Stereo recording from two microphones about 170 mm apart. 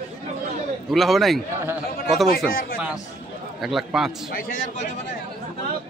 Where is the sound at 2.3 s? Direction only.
55° left (ahead or behind).